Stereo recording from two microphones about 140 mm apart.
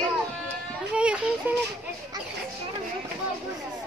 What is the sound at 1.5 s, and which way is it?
Speech, 10° right (ahead or behind).